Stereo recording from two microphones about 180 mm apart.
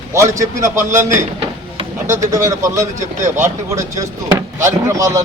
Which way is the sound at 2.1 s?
15° right (ahead or behind).